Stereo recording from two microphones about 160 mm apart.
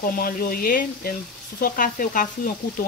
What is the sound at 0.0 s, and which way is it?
Frying, 65° left (ahead or behind).